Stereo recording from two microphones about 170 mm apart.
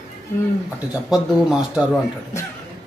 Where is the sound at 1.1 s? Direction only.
5° right (ahead or behind).